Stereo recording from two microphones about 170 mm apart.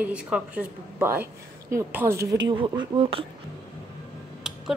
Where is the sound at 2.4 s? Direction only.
25° right (ahead or behind).